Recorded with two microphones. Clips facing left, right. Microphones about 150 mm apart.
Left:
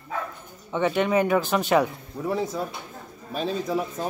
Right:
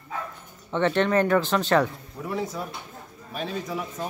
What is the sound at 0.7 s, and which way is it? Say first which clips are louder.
Speech: even; 10° left (ahead or behind).